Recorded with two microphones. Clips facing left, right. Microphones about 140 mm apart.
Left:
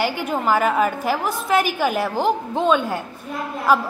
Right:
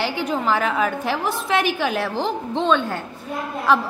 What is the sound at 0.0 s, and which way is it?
A woman's voice, 5° left (ahead or behind).